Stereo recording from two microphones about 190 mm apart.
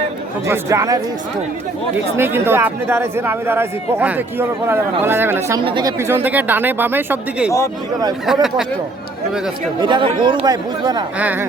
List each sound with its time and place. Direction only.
0.4 s speech: 15° right (ahead or behind)
2.1 s speech: 10° right (ahead or behind)
5.5 s speech: 25° right (ahead or behind)
6.0 s speech: 10° right (ahead or behind)
9.8 s speech: 25° right (ahead or behind)
11.2 s speech: 10° right (ahead or behind)